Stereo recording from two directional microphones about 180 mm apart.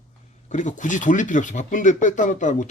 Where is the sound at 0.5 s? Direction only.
45° left (ahead or behind).